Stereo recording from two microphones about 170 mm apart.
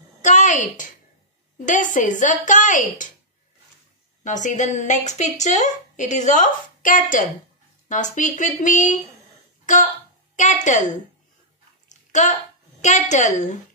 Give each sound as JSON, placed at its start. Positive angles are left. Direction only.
{"t": 0.2, "sound": "a woman's voice", "side_deg": 45}
{"t": 4.2, "sound": "speech", "side_deg": 45}
{"t": 10.3, "sound": "speech", "side_deg": 45}
{"t": 11.9, "sound": "a sound", "side_deg": 45}
{"t": 12.8, "sound": "speech", "side_deg": 45}